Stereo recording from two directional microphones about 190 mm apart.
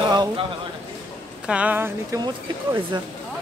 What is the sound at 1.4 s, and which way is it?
Speech, 5° right (ahead or behind).